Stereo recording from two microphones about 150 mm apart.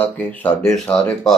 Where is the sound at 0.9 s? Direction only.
5° left (ahead or behind).